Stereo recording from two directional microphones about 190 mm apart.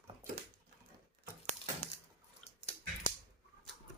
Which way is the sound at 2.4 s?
35° left (ahead or behind).